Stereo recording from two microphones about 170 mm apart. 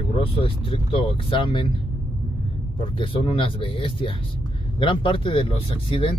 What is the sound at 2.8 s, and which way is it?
Speech, 30° left (ahead or behind).